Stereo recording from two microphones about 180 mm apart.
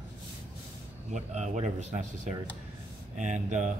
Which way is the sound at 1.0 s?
40° right (ahead or behind).